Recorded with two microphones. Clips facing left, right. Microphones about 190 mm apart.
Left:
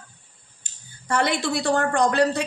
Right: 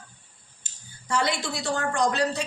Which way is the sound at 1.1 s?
60° left (ahead or behind).